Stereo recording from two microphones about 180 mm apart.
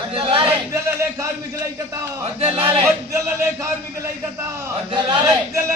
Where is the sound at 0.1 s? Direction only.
30° right (ahead or behind).